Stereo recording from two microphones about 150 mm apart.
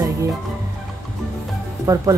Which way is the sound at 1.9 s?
20° right (ahead or behind).